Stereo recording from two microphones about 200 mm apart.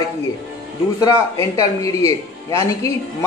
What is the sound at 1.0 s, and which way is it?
Speech, 15° left (ahead or behind).